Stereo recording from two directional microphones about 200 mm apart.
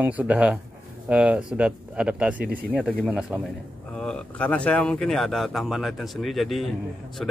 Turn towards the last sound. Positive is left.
turn(degrees=0)  # may be behind; listen again after turning